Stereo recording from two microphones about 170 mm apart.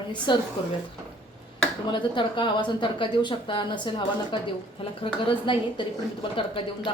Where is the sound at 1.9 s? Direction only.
30° left (ahead or behind).